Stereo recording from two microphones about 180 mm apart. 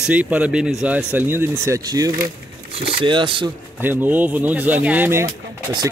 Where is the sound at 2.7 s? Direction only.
30° right (ahead or behind).